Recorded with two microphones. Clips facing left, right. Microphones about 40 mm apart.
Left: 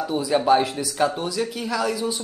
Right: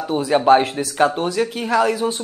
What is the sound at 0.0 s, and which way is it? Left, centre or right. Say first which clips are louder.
Speech: right 4 dB; right.